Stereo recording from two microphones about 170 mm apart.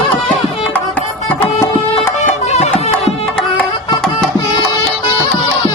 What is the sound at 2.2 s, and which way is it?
Music, 40° left (ahead or behind).